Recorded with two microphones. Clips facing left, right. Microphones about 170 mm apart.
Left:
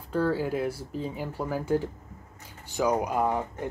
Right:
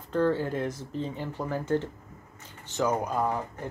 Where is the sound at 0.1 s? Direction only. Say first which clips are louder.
Right 1 dB; 5° left (ahead or behind).